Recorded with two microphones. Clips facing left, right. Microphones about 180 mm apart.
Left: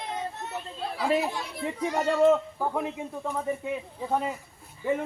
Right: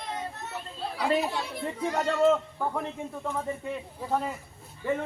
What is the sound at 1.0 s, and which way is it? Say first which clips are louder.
Speech: even; centre (ahead or behind).